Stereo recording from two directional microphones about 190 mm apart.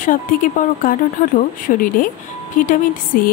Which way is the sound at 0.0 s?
45° left (ahead or behind).